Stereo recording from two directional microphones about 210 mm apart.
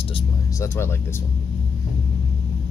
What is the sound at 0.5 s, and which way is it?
Speech, 10° left (ahead or behind).